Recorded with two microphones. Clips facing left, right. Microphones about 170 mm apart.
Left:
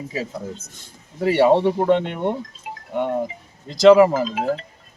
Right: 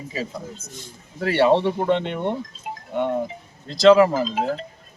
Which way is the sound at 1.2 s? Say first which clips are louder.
Left 2 dB; 10° left (ahead or behind).